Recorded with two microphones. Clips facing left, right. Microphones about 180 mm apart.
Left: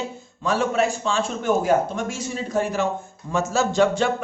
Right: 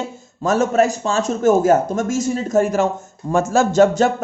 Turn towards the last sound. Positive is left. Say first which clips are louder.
# right 6 dB
turn(degrees=-40)  # may be behind; listen again after turning